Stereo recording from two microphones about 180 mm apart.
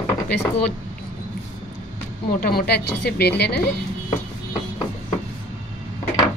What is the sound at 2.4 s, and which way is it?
A woman's voice, 60° left (ahead or behind).